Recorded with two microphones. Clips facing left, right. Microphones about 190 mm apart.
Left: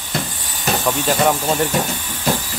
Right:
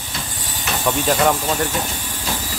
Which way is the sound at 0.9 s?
Centre (ahead or behind).